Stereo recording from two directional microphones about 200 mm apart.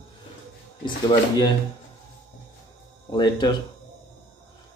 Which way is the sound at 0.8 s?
20° left (ahead or behind).